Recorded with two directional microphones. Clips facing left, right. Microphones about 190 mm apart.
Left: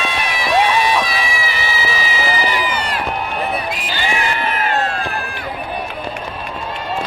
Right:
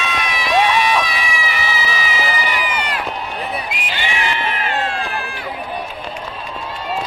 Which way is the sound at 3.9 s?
40° left (ahead or behind).